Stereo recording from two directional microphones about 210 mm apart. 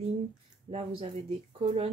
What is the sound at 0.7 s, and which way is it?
Speech, 25° right (ahead or behind).